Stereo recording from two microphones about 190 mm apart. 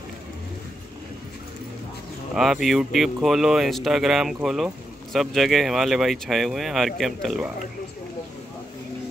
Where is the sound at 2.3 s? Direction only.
Centre (ahead or behind).